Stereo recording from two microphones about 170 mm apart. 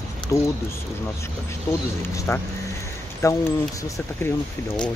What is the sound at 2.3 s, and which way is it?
Speech, 15° left (ahead or behind).